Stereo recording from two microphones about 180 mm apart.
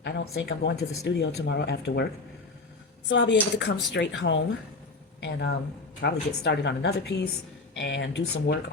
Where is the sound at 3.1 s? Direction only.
85° left.